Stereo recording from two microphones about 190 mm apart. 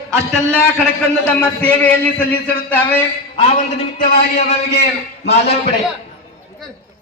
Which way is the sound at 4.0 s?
45° left (ahead or behind).